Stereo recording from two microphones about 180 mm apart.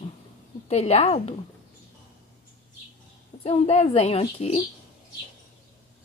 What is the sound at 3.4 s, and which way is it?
Speech, 35° left (ahead or behind).